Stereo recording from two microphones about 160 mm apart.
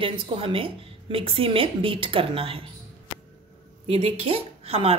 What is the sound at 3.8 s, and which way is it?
A woman's voice, 35° right (ahead or behind).